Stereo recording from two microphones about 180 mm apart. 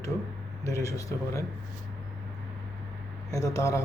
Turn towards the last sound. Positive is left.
turn(degrees=15)  # may be behind; listen again after turning